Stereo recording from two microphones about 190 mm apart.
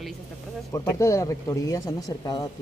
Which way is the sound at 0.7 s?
15° left (ahead or behind).